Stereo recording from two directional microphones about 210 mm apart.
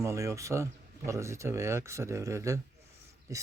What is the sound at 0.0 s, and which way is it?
Speech, 15° right (ahead or behind).